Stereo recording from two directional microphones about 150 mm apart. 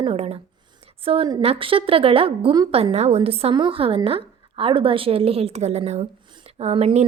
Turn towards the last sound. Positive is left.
turn(degrees=-40)  # may be behind; listen again after turning